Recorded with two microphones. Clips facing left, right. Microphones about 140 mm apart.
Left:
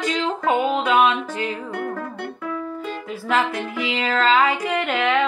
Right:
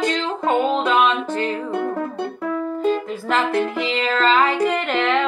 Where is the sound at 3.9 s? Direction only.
5° left (ahead or behind).